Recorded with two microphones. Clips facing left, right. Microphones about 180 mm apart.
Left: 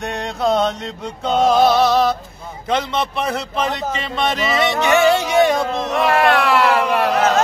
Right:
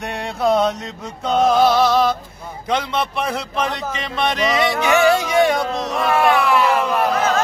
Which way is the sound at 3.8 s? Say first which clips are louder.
Left 2 dB; 35° left (ahead or behind).